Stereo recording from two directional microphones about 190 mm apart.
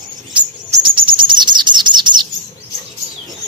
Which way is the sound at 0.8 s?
25° right (ahead or behind).